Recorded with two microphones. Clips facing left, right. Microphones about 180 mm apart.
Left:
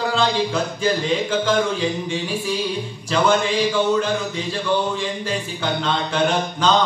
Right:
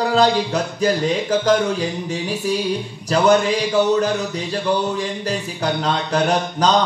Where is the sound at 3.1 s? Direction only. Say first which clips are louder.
Right 4 dB; 40° right (ahead or behind).